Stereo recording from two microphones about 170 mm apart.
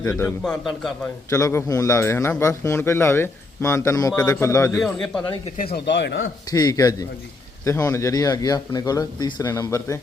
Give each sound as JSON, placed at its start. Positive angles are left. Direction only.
{"t": 0.0, "sound": "speech", "side_deg": 20}
{"t": 0.3, "sound": "a man's voice", "side_deg": 5}
{"t": 1.3, "sound": "a man's voice", "side_deg": 15}
{"t": 4.8, "sound": "a man's voice", "side_deg": 0}
{"t": 5.7, "sound": "speech", "side_deg": 90}
{"t": 6.5, "sound": "speech", "side_deg": 20}